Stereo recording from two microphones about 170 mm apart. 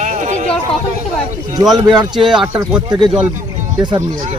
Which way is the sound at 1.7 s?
25° right (ahead or behind).